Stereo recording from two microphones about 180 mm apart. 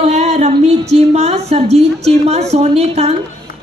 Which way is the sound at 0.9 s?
35° right (ahead or behind).